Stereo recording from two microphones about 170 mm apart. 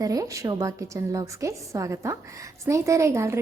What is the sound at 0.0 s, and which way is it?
A woman's voice, 20° right (ahead or behind).